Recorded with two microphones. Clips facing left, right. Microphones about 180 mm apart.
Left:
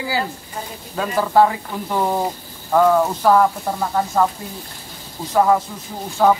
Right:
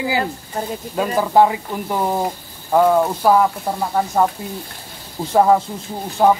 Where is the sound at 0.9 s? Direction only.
15° right (ahead or behind).